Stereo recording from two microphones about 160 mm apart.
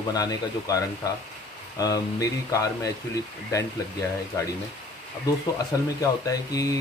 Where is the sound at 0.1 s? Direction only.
20° left (ahead or behind).